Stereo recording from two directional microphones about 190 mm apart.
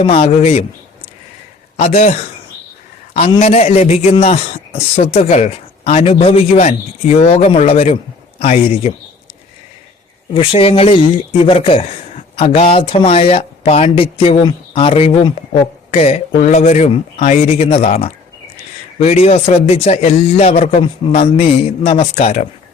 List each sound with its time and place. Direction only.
0.0 s a man's voice: 30° left (ahead or behind)
1.7 s a man's voice: 35° left (ahead or behind)
3.2 s a man's voice: 30° left (ahead or behind)
10.3 s a man's voice: 30° left (ahead or behind)